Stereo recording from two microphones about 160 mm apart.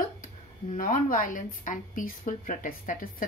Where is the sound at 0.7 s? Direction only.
55° left (ahead or behind).